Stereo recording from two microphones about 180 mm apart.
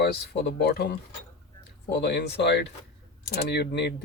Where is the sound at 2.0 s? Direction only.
65° left (ahead or behind).